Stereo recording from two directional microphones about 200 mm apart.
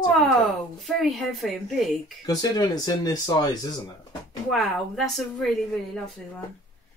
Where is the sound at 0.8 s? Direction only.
Centre (ahead or behind).